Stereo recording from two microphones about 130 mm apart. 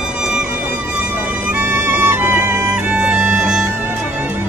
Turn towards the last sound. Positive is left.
turn(degrees=-10)  # may be behind; listen again after turning